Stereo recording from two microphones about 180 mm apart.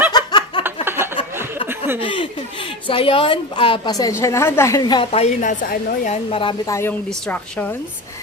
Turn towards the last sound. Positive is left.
turn(degrees=10)  # may be behind; listen again after turning